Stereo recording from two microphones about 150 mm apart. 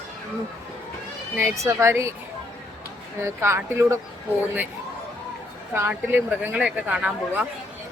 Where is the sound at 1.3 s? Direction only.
20° right (ahead or behind).